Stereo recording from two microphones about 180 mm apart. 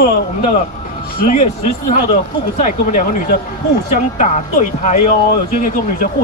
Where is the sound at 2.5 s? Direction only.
45° left (ahead or behind).